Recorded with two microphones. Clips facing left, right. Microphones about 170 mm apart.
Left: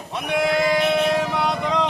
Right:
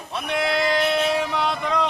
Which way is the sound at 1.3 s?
15° left (ahead or behind).